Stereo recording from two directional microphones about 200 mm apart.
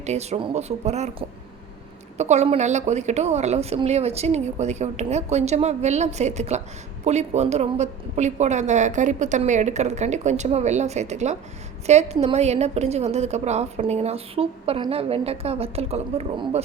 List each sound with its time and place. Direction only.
0.0 s a woman's voice: 35° right (ahead or behind)
2.1 s a woman's voice: 35° right (ahead or behind)